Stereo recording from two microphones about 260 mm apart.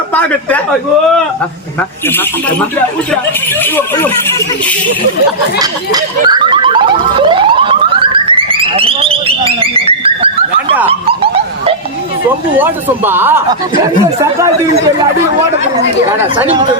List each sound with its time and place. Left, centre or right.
0.1 s a sound: centre
3.6 s speech: centre
5.5 s car alarm: centre
10.8 s bow-wow: right
12.5 s speech: centre